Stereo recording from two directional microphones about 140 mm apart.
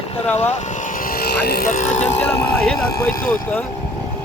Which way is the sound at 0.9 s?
85° left.